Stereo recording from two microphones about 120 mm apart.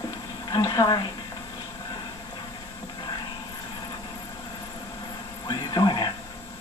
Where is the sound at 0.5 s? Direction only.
30° left (ahead or behind).